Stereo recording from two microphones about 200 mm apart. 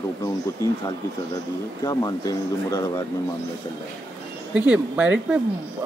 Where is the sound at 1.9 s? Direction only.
20° left (ahead or behind).